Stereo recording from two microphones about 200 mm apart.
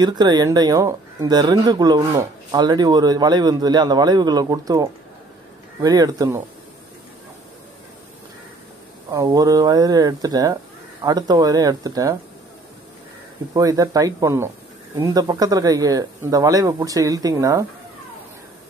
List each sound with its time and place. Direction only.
0.0 s speech: 20° right (ahead or behind)
9.1 s speech: 15° right (ahead or behind)
13.5 s speech: 15° right (ahead or behind)